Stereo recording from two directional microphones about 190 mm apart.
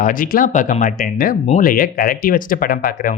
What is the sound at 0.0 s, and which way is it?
Speech, 45° left (ahead or behind).